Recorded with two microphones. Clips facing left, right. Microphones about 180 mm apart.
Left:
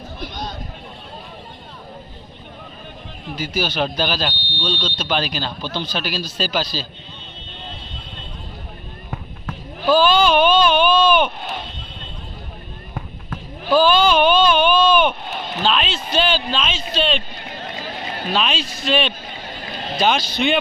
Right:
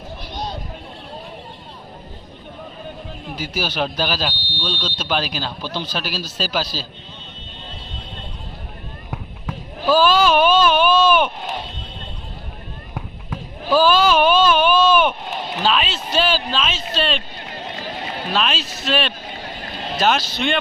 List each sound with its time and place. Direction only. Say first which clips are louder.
0.3 s a sound: right 4 dB; 30° right (ahead or behind)
3.3 s speech: left 2 dB; 5° right (ahead or behind)
9.0 s basketball bounce: right 1 dB; 5° right (ahead or behind)
12.9 s basketball bounce: even; 5° right (ahead or behind)
15.6 s speech: even; 5° right (ahead or behind)
18.3 s speech: even; centre (ahead or behind)